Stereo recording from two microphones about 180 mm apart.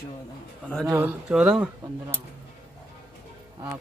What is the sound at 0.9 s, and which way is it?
Speech, 5° right (ahead or behind).